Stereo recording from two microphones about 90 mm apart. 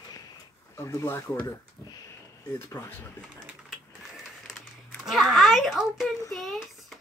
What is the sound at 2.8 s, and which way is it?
Speech, 25° left (ahead or behind).